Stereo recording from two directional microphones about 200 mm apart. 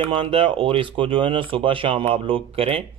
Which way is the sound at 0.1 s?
25° right (ahead or behind).